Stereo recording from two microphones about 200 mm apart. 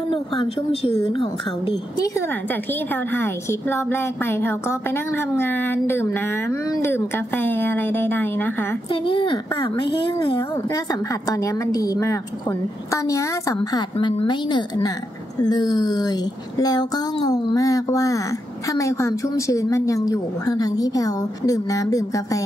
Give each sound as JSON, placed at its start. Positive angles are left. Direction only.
{"t": 0.1, "sound": "speech", "side_deg": 30}
{"t": 2.0, "sound": "a woman's voice", "side_deg": 10}
{"t": 8.9, "sound": "a woman's voice", "side_deg": 25}